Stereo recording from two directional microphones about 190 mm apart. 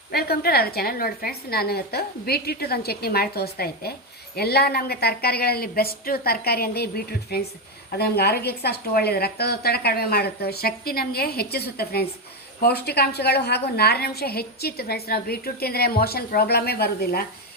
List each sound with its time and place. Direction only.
0.1 s a woman's voice: 55° left (ahead or behind)